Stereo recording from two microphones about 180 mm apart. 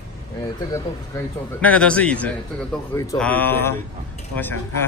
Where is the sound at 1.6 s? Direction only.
5° left (ahead or behind).